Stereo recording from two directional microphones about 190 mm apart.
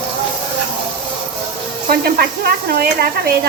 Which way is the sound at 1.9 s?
55° right (ahead or behind).